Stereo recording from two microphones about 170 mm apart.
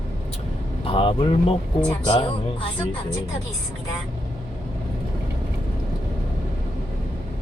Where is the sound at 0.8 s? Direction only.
30° left (ahead or behind).